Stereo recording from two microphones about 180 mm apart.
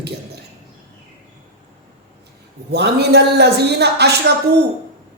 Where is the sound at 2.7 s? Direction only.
65° right (ahead or behind).